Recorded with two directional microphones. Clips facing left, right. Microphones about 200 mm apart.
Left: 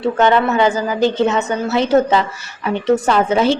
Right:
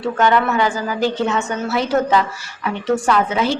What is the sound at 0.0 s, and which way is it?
A woman's voice, 25° left (ahead or behind).